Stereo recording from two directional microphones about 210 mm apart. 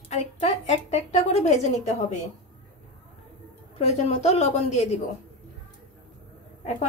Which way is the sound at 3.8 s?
30° left (ahead or behind).